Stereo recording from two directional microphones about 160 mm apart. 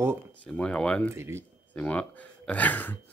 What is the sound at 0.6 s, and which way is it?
Speech, 5° left (ahead or behind).